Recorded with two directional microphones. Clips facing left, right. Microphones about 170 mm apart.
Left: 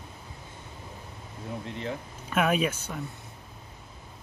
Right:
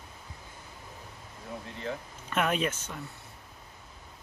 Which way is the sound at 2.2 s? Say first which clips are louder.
Left 3 dB; 10° left (ahead or behind).